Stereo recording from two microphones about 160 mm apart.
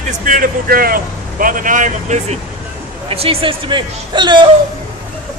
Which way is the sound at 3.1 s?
35° right (ahead or behind).